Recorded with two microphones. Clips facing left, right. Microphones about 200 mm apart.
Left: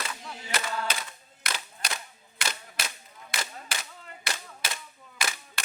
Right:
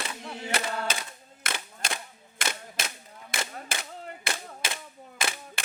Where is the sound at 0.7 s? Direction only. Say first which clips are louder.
Right 1 dB; 55° right (ahead or behind).